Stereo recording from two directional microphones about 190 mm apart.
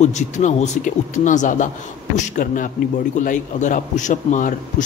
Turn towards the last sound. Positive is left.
turn(degrees=40)  # may be behind; listen again after turning